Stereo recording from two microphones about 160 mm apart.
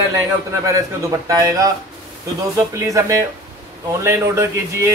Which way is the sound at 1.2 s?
20° right (ahead or behind).